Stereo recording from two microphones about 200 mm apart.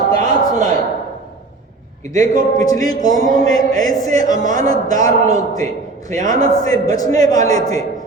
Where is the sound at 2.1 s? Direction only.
35° right (ahead or behind).